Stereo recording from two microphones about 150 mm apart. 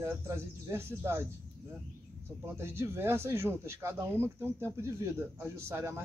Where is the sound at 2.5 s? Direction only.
15° right (ahead or behind).